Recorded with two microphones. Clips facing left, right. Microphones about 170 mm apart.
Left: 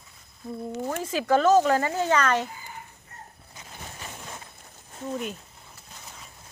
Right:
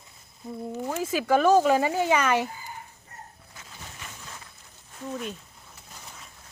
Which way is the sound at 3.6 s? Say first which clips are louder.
Left 2 dB; 20° left (ahead or behind).